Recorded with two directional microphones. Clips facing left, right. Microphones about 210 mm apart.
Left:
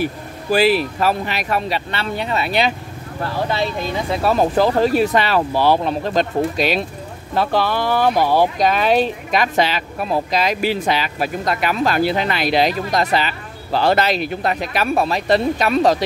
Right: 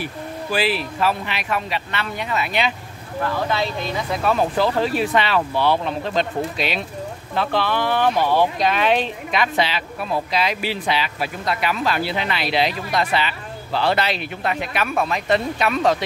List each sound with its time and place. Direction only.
0.0 s speech: 40° left (ahead or behind)
4.2 s speech: 40° left (ahead or behind)